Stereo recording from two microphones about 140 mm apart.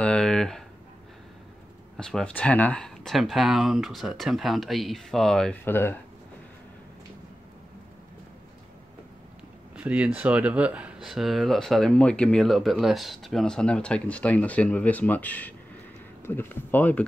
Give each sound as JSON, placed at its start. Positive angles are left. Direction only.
{"t": 0.0, "sound": "a sound", "side_deg": 5}
{"t": 2.0, "sound": "speech", "side_deg": 5}
{"t": 5.7, "sound": "speech", "side_deg": 15}
{"t": 9.8, "sound": "speech", "side_deg": -10}